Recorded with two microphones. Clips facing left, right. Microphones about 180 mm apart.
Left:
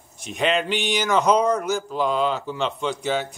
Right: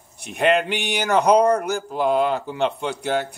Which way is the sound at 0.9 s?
60° right (ahead or behind).